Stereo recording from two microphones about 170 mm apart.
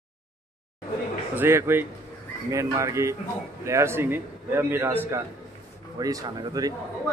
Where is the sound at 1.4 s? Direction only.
15° right (ahead or behind).